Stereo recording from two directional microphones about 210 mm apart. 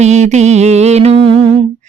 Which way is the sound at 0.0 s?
35° right (ahead or behind).